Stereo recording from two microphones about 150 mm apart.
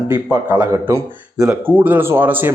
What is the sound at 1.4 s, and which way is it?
Speech, 10° right (ahead or behind).